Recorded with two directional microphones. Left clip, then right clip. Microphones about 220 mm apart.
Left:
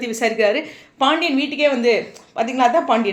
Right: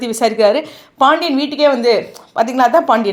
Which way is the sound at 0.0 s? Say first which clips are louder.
Right 5 dB; 25° right (ahead or behind).